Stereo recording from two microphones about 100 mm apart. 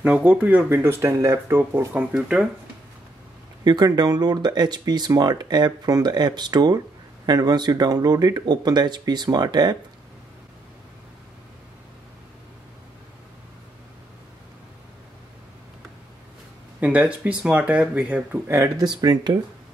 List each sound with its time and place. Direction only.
0.0 s speech: 15° right (ahead or behind)
2.1 s speech: 10° right (ahead or behind)
3.6 s speech: 45° right (ahead or behind)
16.8 s speech: 15° right (ahead or behind)
18.8 s speech: 45° right (ahead or behind)